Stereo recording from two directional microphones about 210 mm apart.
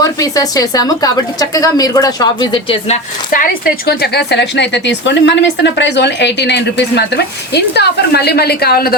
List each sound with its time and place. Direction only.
0.0 s a woman's voice: 15° left (ahead or behind)
3.3 s a woman's voice: 45° left (ahead or behind)